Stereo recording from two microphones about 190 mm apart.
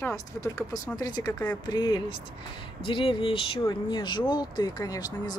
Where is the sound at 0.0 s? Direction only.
15° left (ahead or behind).